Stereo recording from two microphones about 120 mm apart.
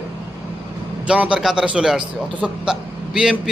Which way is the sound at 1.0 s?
10° right (ahead or behind).